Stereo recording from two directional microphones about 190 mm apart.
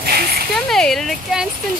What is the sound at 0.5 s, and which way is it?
Speech, centre (ahead or behind).